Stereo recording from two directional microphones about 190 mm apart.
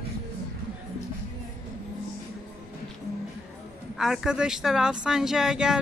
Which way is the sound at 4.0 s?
5° right (ahead or behind).